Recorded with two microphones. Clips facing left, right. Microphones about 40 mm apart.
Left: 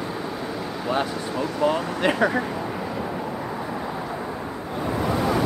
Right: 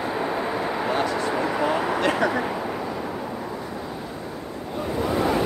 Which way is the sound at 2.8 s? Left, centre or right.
Centre.